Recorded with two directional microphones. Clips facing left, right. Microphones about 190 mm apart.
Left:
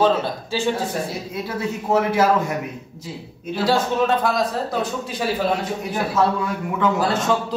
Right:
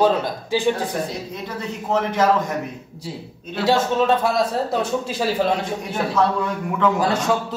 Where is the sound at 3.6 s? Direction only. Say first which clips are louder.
Right 1 dB; 25° right (ahead or behind).